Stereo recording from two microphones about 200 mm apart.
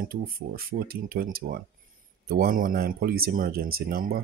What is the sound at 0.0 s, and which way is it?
Speech, 45° right (ahead or behind).